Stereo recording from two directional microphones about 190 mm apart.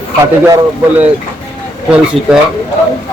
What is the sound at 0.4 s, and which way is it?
Speech, 15° right (ahead or behind).